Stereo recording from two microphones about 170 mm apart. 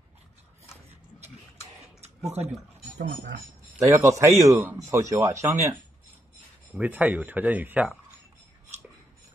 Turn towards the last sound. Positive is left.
turn(degrees=-10)  # may be behind; listen again after turning